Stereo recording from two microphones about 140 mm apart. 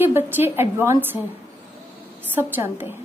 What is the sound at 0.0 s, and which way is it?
A woman's voice, 15° right (ahead or behind).